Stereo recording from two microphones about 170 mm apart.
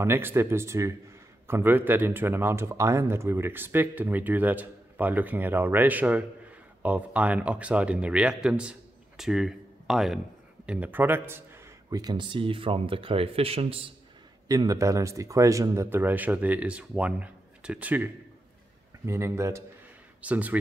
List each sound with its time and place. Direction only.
0.0 s speech: 15° right (ahead or behind); by 13.8 s 35° right (ahead or behind)
14.5 s speech: 20° right (ahead or behind)